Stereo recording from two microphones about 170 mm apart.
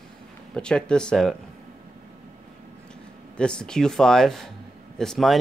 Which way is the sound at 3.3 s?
5° left (ahead or behind).